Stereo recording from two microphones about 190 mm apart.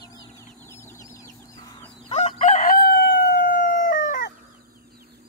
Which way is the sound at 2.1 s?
35° left (ahead or behind).